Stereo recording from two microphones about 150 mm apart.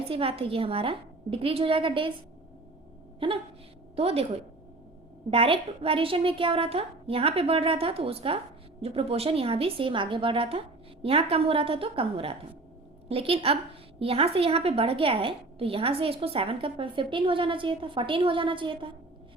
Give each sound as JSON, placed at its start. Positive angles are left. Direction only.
{"t": 0.0, "sound": "a woman's voice", "side_deg": -40}
{"t": 3.2, "sound": "a woman's voice", "side_deg": -35}
{"t": 5.3, "sound": "a woman's voice", "side_deg": -40}